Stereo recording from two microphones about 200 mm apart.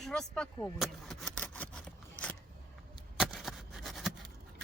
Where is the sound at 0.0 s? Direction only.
5° left (ahead or behind).